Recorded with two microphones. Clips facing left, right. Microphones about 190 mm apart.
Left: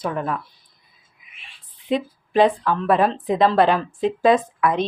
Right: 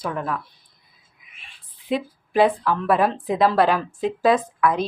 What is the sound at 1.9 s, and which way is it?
A woman's voice, 5° right (ahead or behind).